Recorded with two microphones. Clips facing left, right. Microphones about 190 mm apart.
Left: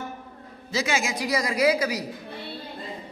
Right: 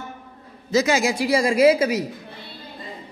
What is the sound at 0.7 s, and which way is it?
A man's voice, 40° right (ahead or behind).